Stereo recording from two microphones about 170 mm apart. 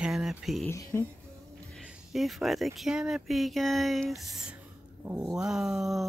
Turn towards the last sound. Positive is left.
turn(degrees=0)  # may be behind; listen again after turning